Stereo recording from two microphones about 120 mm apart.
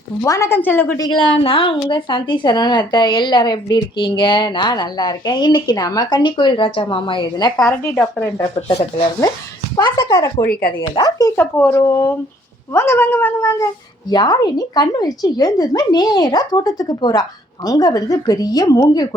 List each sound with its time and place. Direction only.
0.2 s speech: 25° left (ahead or behind)
1.1 s a woman's voice: 45° left (ahead or behind)
7.6 s speech: 10° left (ahead or behind)
9.7 s a woman's voice: 40° left (ahead or behind)
10.1 s speech: 25° left (ahead or behind)
11.0 s a woman's voice: 40° left (ahead or behind)
11.3 s speech: 15° left (ahead or behind)
11.8 s speech: 25° left (ahead or behind)
14.1 s a woman's voice: 35° left (ahead or behind)